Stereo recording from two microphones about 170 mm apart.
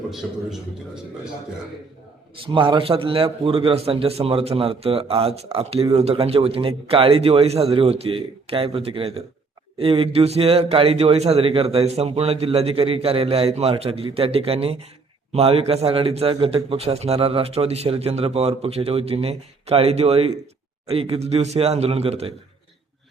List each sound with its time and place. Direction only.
2.4 s a man's voice: 30° right (ahead or behind)